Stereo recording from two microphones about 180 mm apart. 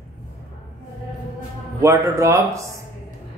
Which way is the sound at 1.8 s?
15° right (ahead or behind).